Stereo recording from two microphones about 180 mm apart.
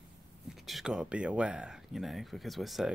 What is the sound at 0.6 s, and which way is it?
Speech, centre (ahead or behind).